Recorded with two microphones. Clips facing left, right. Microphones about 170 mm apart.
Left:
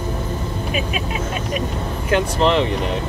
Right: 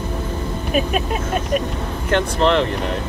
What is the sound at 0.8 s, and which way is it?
Speech, 50° right (ahead or behind).